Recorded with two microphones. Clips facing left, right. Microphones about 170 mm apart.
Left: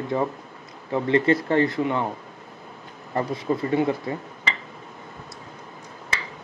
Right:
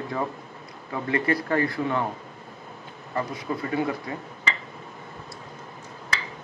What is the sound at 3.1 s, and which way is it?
Speech, 25° left (ahead or behind).